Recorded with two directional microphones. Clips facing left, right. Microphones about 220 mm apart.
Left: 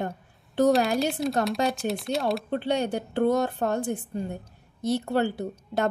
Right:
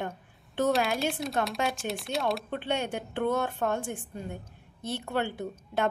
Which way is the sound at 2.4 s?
35° left (ahead or behind).